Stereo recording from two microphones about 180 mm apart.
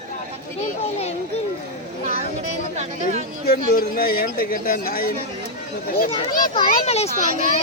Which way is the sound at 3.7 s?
55° left (ahead or behind).